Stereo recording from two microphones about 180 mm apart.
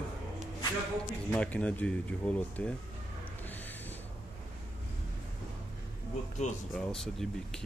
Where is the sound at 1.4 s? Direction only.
5° left (ahead or behind).